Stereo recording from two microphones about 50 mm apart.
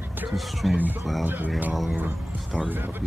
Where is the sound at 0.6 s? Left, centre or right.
Centre.